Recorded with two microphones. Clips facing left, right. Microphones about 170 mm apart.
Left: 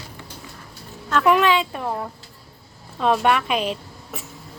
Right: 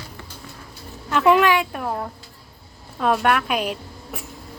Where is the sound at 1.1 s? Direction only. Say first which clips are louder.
Right 1 dB; 15° right (ahead or behind).